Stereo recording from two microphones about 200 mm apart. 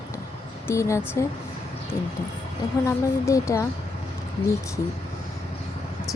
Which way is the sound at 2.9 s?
15° left (ahead or behind).